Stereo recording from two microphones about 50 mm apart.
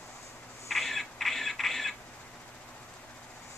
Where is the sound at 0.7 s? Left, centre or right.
Centre.